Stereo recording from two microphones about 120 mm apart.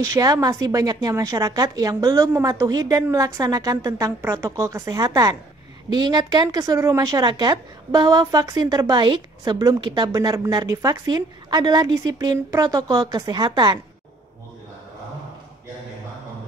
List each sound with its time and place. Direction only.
0.0 s a woman's voice: 30° right (ahead or behind)